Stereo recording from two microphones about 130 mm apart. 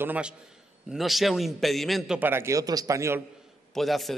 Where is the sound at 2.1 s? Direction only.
15° right (ahead or behind).